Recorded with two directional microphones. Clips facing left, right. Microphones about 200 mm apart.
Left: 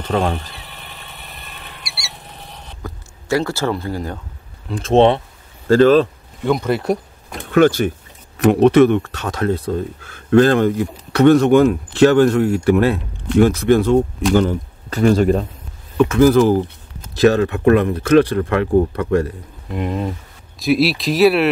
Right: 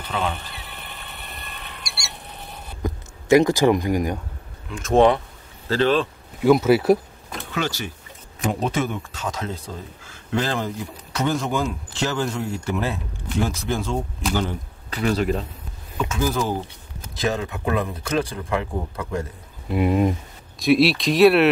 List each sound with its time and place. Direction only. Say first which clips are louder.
0.1 s speech: left 7 dB; 45° left (ahead or behind)
0.5 s a sound: left 1 dB; centre (ahead or behind)
2.8 s speech: right 7 dB; 15° right (ahead or behind)
4.6 s speech: left 3 dB; 30° left (ahead or behind)
5.7 s speech: left 9 dB; 45° left (ahead or behind)
6.4 s speech: right 3 dB; 5° right (ahead or behind)
7.5 s speech: left 14 dB; 55° left (ahead or behind)
8.4 s speech: left 13 dB; 65° left (ahead or behind)
14.3 s speech: left 10 dB; 50° left (ahead or behind)
16.0 s speech: left 12 dB; 65° left (ahead or behind)
19.7 s speech: right 3 dB; 10° right (ahead or behind)
20.5 s speech: left 1 dB; centre (ahead or behind)